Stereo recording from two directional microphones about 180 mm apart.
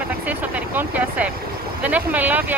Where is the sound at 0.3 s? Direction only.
10° right (ahead or behind).